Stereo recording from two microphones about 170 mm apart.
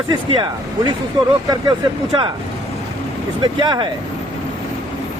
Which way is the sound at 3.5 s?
25° right (ahead or behind).